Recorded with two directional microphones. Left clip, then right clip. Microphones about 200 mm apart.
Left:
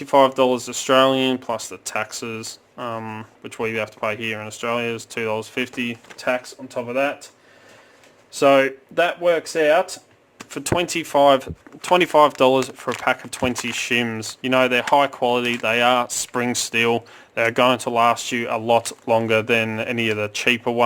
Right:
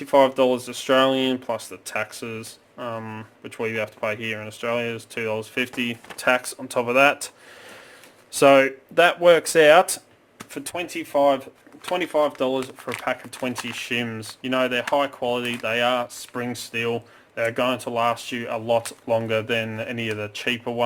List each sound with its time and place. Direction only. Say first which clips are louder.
0.0 s speech: left 2 dB; 15° left (ahead or behind)
5.5 s speech: even; 5° left (ahead or behind)
6.7 s speech: right 5 dB; 25° right (ahead or behind)
8.4 s speech: even; centre (ahead or behind)
9.2 s speech: right 5 dB; 15° right (ahead or behind)
10.6 s speech: left 8 dB; 35° left (ahead or behind)
13.1 s speech: left 6 dB; 35° left (ahead or behind)